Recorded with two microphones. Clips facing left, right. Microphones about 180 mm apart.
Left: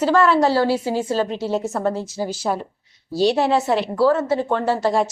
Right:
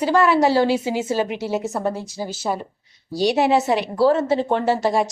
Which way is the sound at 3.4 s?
15° right (ahead or behind).